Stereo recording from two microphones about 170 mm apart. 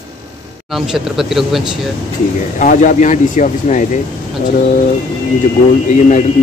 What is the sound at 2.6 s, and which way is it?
Speech, 50° left (ahead or behind).